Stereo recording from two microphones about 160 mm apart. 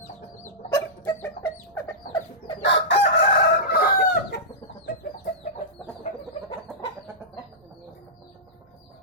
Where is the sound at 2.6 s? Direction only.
90° left.